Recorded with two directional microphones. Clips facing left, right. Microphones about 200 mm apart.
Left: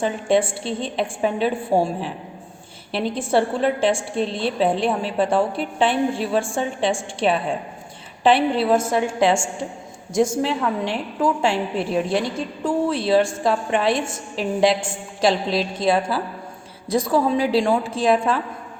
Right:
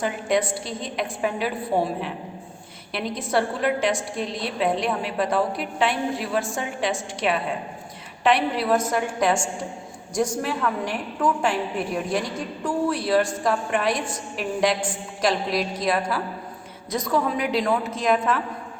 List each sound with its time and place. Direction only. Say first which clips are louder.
0.0 s a woman's voice: left 4 dB; 30° left (ahead or behind)